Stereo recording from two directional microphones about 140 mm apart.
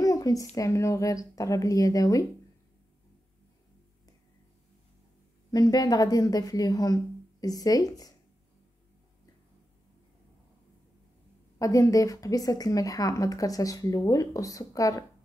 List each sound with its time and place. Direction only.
0.0 s a sound: 25° left (ahead or behind)
0.6 s a woman's voice: 20° left (ahead or behind)
5.5 s a woman's voice: 25° left (ahead or behind)
11.5 s a woman's voice: 25° left (ahead or behind)